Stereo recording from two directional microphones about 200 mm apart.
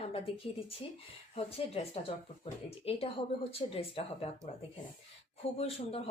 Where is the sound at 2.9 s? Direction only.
30° left (ahead or behind).